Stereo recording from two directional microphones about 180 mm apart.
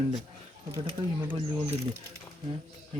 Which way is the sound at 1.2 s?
10° right (ahead or behind).